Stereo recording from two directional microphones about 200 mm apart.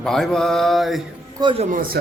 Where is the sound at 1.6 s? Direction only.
45° right (ahead or behind).